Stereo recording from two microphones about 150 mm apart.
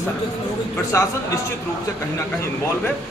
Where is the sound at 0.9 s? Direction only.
20° left (ahead or behind).